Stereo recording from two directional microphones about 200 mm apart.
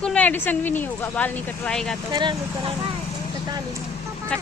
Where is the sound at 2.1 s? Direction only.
25° right (ahead or behind).